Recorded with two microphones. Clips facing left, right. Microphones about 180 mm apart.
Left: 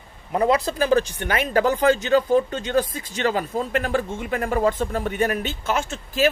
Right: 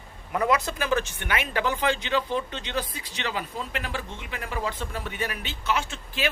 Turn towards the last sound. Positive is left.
turn(degrees=45)  # may be behind; listen again after turning